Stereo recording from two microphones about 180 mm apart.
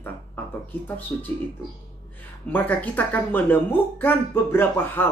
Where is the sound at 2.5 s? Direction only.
10° left (ahead or behind).